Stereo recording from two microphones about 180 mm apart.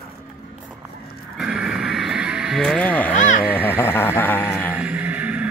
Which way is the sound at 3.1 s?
45° left (ahead or behind).